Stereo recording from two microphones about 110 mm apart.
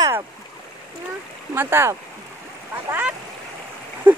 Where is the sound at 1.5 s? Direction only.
20° right (ahead or behind).